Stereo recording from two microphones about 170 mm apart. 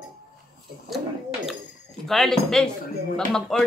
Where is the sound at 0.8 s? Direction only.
Centre (ahead or behind).